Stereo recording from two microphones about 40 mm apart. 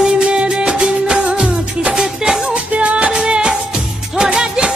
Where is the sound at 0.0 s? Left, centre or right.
Right.